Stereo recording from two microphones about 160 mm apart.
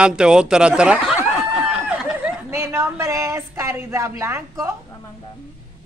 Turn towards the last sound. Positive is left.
turn(degrees=-20)  # may be behind; listen again after turning